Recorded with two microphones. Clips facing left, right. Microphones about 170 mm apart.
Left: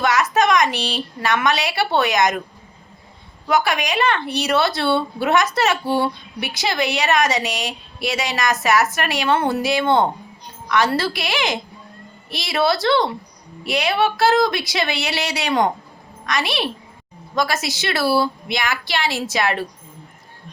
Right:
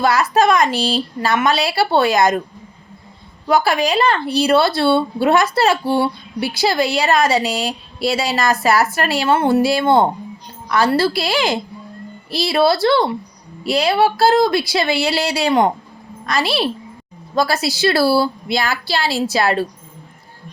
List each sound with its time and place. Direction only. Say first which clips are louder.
0.0 s speech: right 3 dB; 30° right (ahead or behind)
3.5 s a woman's voice: right 4 dB; 30° right (ahead or behind)